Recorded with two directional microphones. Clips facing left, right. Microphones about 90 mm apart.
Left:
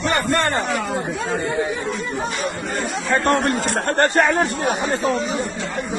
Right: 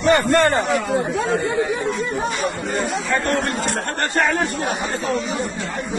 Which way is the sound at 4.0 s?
35° left (ahead or behind).